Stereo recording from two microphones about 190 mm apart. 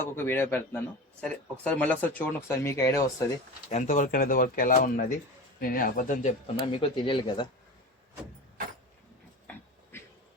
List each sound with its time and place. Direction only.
0.0 s speech: 10° left (ahead or behind)
3.7 s speech: 40° left (ahead or behind)
6.6 s speech: 25° left (ahead or behind)